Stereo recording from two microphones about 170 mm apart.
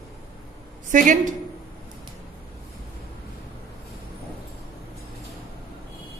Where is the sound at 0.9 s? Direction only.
50° right (ahead or behind).